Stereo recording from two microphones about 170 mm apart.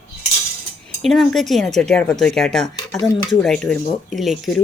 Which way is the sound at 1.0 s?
Centre (ahead or behind).